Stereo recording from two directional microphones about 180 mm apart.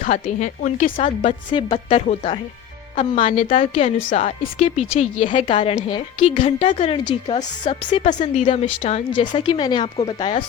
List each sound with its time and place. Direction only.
0.0 s speech: 45° left (ahead or behind)
1.5 s speech: 30° left (ahead or behind)
2.9 s speech: 45° left (ahead or behind)
6.1 s speech: 40° left (ahead or behind)
8.2 s speech: 40° left (ahead or behind)
9.4 s speech: 25° left (ahead or behind)